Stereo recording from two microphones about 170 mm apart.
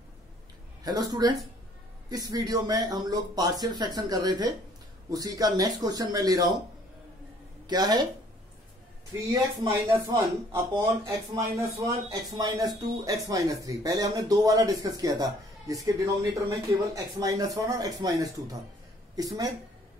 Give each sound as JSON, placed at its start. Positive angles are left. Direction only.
{"t": 0.8, "sound": "speech", "side_deg": -25}
{"t": 7.6, "sound": "a woman's voice", "side_deg": -25}
{"t": 9.3, "sound": "speech", "side_deg": -15}